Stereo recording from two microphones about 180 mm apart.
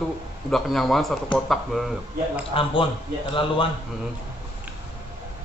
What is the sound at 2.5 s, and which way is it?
Speech, 30° left (ahead or behind).